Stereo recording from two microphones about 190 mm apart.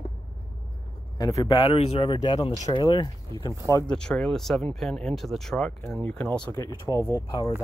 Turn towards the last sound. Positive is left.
turn(degrees=20)  # may be behind; listen again after turning